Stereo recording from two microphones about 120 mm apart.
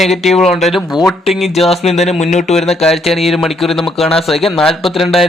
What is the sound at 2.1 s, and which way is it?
Speech, 65° left (ahead or behind).